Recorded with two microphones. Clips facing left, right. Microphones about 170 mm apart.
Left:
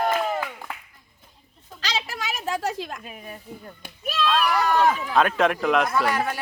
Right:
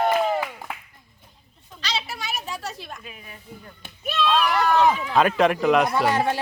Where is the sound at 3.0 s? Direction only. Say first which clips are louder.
Left 4 dB; 45° left (ahead or behind).